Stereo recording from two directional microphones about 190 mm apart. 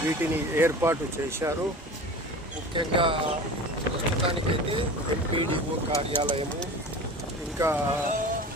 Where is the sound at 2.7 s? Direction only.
25° right (ahead or behind).